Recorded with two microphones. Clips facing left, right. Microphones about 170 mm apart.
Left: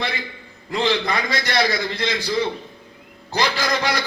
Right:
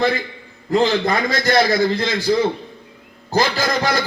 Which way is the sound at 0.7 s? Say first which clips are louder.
Right 5 dB; 45° right (ahead or behind).